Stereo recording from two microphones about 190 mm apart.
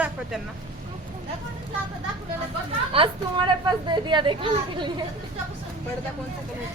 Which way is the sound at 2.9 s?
25° right (ahead or behind).